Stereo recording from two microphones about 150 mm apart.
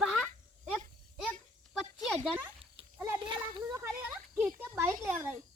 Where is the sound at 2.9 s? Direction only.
15° right (ahead or behind).